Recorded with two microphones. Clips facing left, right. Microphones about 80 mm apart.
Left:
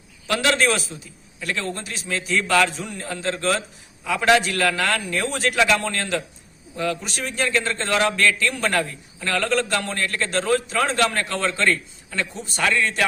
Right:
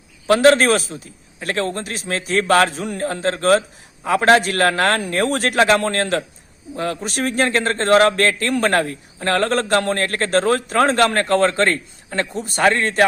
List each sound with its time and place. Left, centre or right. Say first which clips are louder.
0.3 s a man's voice: right 8 dB; right